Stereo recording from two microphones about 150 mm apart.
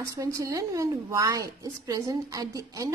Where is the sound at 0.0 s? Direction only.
20° right (ahead or behind).